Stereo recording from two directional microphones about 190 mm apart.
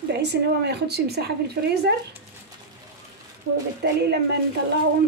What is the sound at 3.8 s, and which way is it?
Speech, 60° right (ahead or behind).